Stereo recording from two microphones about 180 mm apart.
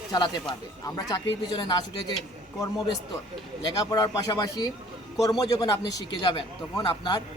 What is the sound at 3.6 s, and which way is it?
A man's voice, 20° left (ahead or behind).